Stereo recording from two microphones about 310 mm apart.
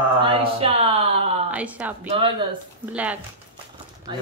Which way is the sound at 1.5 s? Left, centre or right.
Centre.